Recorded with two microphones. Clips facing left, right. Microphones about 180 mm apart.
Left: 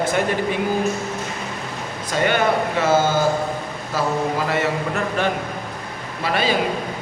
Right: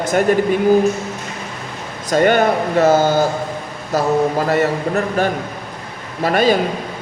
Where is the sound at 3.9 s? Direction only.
40° right (ahead or behind).